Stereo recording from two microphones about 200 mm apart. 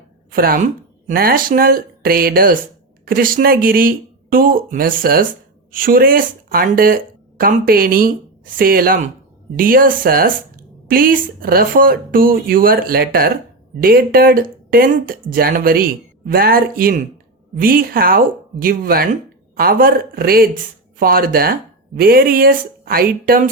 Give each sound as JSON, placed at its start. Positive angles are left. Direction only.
{"t": 0.3, "sound": "a woman's voice", "side_deg": -45}